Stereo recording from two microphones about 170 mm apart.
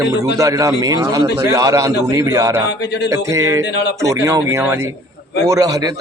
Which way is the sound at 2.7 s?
80° left.